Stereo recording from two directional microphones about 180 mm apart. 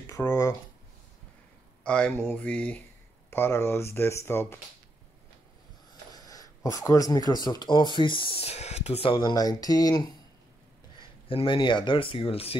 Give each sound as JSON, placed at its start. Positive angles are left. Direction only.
{"t": 0.0, "sound": "speech", "side_deg": 20}
{"t": 1.9, "sound": "speech", "side_deg": 5}
{"t": 6.1, "sound": "speech", "side_deg": 20}